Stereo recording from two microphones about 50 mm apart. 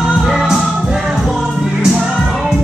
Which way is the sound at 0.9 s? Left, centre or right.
Centre.